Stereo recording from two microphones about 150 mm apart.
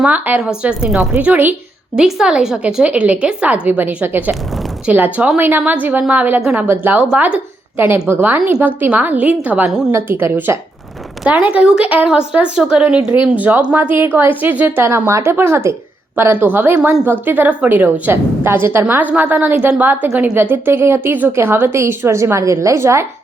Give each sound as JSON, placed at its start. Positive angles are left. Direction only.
{"t": 0.0, "sound": "a woman's voice", "side_deg": -10}
{"t": 9.9, "sound": "a woman's voice", "side_deg": -15}